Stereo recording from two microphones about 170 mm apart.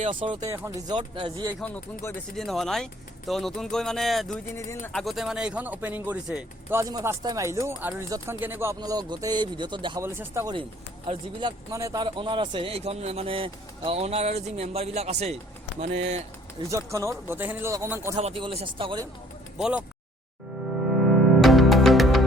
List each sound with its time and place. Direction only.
0.0 s speech: 30° right (ahead or behind)
0.4 s speech: 20° right (ahead or behind)
1.6 s speech: 15° left (ahead or behind)
2.3 s speech: centre (ahead or behind)
6.7 s speech: 20° right (ahead or behind)
10.0 s speech: 15° right (ahead or behind)
10.5 s speech: 30° right (ahead or behind)
12.0 s speech: 30° right (ahead or behind)
16.6 s speech: 20° right (ahead or behind)
18.2 s speech: 35° right (ahead or behind)
20.9 s music: centre (ahead or behind)